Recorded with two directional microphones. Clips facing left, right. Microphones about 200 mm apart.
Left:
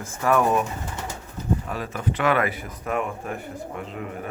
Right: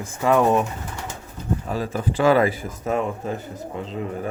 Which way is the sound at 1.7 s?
30° right (ahead or behind).